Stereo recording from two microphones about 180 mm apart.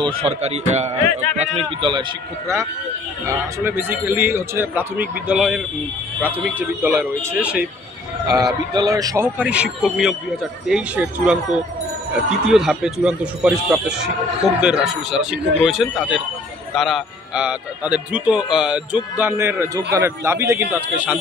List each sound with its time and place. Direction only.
0.0 s a man's voice: 35° right (ahead or behind)
3.3 s a man's voice: 15° right (ahead or behind)
8.7 s a man's voice: 20° right (ahead or behind)